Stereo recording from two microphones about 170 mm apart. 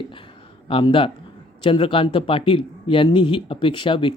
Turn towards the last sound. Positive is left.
turn(degrees=30)  # may be behind; listen again after turning